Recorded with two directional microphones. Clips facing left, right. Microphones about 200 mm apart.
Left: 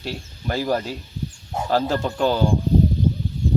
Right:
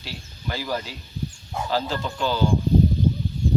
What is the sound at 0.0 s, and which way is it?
Speech, 45° left (ahead or behind).